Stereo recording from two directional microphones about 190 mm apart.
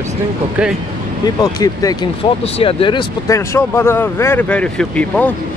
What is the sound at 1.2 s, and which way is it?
Speech, 20° left (ahead or behind).